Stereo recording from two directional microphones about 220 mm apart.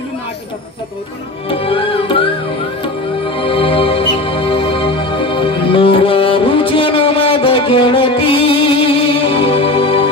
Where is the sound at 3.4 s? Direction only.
25° left (ahead or behind).